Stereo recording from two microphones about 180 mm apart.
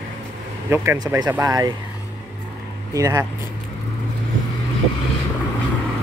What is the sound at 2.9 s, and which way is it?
Speech, 20° right (ahead or behind).